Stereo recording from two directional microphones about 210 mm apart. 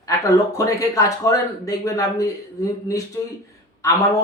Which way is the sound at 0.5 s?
15° left (ahead or behind).